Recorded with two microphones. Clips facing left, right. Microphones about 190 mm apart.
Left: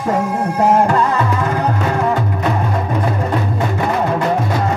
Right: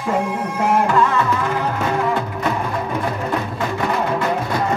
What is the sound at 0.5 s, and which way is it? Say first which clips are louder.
Music: left 5 dB; 40° left (ahead or behind).